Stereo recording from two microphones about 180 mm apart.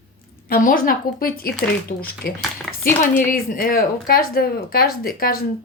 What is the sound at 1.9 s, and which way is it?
Speech, 40° left (ahead or behind).